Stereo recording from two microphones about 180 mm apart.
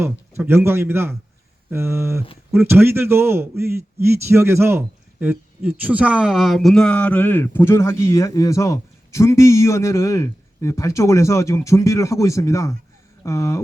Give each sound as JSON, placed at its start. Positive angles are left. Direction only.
{"t": 0.0, "sound": "a man's voice", "side_deg": -15}